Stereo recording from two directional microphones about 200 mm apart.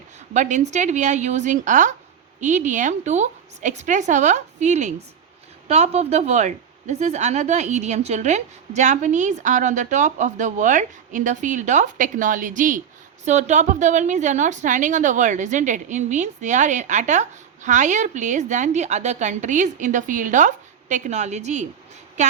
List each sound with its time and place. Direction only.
0.3 s a woman's voice: 35° right (ahead or behind)